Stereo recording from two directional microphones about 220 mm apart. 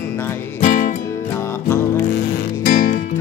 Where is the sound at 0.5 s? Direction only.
35° left (ahead or behind).